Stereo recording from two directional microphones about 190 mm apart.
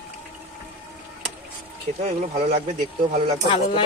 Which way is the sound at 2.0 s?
45° right (ahead or behind).